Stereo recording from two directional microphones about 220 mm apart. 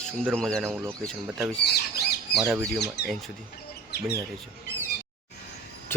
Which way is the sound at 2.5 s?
Centre (ahead or behind).